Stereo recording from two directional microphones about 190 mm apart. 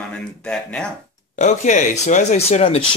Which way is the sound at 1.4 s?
40° left (ahead or behind).